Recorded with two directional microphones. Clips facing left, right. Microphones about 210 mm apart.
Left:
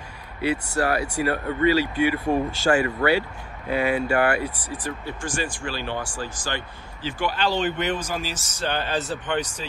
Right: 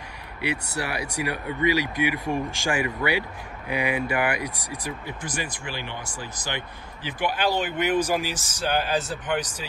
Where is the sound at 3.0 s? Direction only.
45° left (ahead or behind).